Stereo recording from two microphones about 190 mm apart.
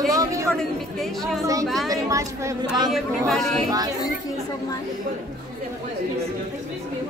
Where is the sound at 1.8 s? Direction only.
20° right (ahead or behind).